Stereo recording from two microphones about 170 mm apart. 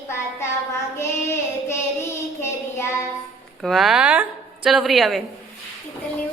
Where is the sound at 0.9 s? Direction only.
15° left (ahead or behind).